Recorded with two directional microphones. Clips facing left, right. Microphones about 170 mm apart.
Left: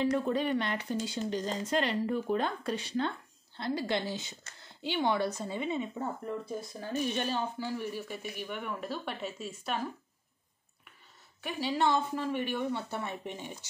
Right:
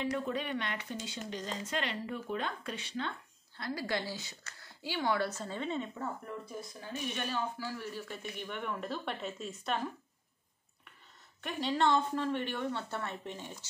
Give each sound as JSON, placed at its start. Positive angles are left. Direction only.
{"t": 0.0, "sound": "speech", "side_deg": 35}
{"t": 3.5, "sound": "a woman's voice", "side_deg": 25}
{"t": 6.8, "sound": "speech", "side_deg": 35}
{"t": 11.4, "sound": "speech", "side_deg": 5}